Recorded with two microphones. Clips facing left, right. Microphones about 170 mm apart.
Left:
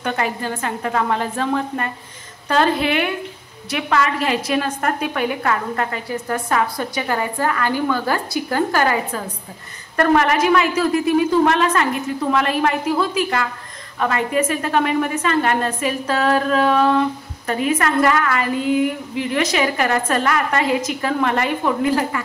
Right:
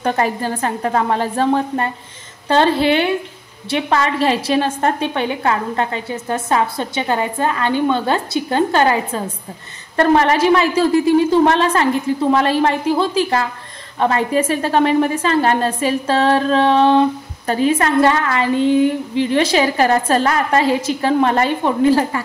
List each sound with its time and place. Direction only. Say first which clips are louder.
0.0 s a woman's voice: right 4 dB; 35° right (ahead or behind)